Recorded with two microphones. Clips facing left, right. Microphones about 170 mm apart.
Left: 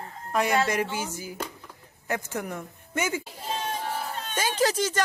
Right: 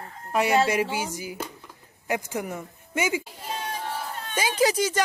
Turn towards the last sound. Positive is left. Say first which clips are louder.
# right 2 dB
turn(degrees=-10)  # may be behind; listen again after turning